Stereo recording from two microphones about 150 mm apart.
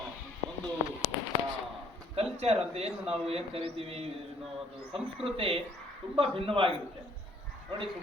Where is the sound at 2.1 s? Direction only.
40° right (ahead or behind).